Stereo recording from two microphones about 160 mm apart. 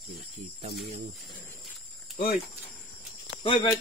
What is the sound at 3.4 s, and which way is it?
Speech, 35° left (ahead or behind).